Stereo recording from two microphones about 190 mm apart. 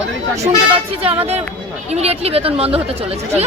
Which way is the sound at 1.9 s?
35° right (ahead or behind).